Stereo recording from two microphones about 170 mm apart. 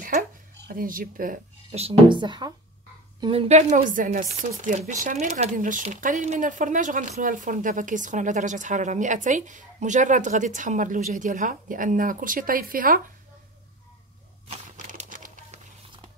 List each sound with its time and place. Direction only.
0.7 s speech: 55° right (ahead or behind)
1.7 s speech: 35° right (ahead or behind); by 13.0 s 55° right (ahead or behind)
14.5 s crumpling: 45° right (ahead or behind)